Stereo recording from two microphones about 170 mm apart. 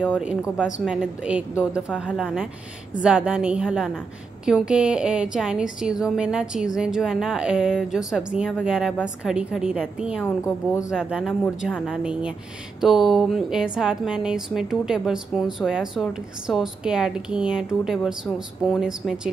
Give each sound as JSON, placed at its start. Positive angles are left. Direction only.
{"t": 0.0, "sound": "speech", "side_deg": -5}
{"t": 10.2, "sound": "a woman's voice", "side_deg": 15}
{"t": 10.9, "sound": "speech", "side_deg": -5}